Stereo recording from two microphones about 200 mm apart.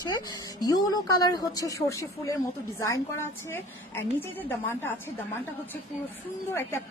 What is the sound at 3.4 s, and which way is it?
A woman's voice, 10° left (ahead or behind).